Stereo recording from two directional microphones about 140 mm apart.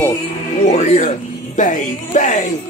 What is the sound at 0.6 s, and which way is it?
Speech, 55° left (ahead or behind).